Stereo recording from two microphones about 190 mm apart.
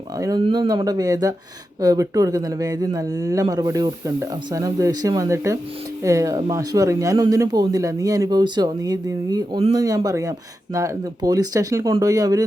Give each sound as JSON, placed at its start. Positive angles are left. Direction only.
{"t": 0.2, "sound": "speech", "side_deg": -20}